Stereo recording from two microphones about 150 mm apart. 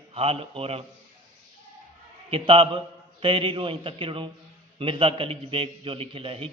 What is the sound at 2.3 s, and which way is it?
A man's voice, 35° right (ahead or behind).